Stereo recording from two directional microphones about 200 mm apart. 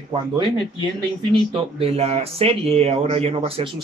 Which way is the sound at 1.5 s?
30° right (ahead or behind).